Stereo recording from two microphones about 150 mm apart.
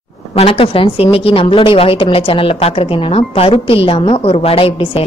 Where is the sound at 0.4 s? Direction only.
40° left (ahead or behind).